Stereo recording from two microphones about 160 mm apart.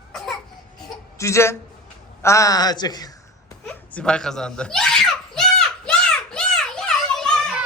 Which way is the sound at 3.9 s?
5° left (ahead or behind).